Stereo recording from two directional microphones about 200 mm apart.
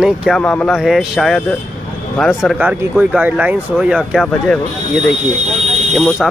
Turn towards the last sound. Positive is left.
turn(degrees=0)  # may be behind; listen again after turning